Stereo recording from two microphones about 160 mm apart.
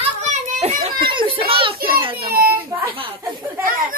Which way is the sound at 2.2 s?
70° right (ahead or behind).